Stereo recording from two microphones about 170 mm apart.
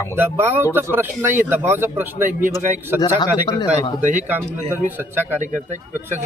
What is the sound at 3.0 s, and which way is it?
Speech, 25° left (ahead or behind).